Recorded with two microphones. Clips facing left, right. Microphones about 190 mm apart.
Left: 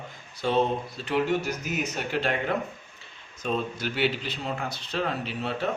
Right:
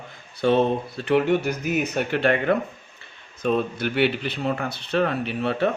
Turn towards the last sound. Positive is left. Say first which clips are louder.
# right 7 dB
turn(degrees=-60)  # may be behind; listen again after turning